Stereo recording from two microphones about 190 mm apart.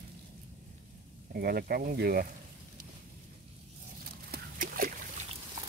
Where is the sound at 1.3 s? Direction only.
55° right (ahead or behind).